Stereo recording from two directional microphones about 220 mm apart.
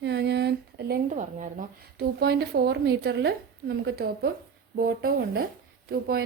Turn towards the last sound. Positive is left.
turn(degrees=-45)  # may be behind; listen again after turning